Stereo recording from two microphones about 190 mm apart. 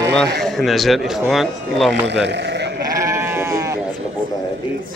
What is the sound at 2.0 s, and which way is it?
Speech, 65° right (ahead or behind).